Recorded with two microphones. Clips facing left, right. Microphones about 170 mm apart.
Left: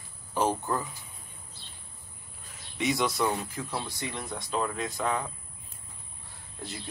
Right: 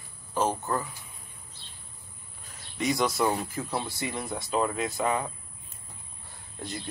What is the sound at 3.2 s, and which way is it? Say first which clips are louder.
Speech: right 2 dB; 10° right (ahead or behind).